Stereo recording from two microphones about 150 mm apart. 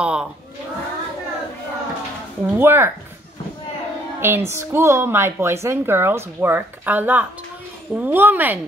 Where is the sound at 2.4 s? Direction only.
15° right (ahead or behind).